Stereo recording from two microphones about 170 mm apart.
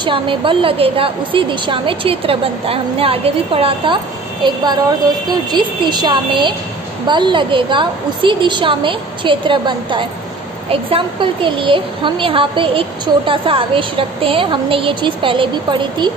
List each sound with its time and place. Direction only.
0.0 s a woman's voice: 30° right (ahead or behind)